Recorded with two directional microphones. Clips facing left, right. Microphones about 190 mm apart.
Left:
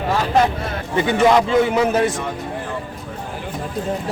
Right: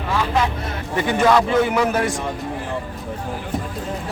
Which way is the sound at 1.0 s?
20° left (ahead or behind).